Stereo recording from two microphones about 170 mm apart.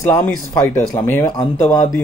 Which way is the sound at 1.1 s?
15° left (ahead or behind).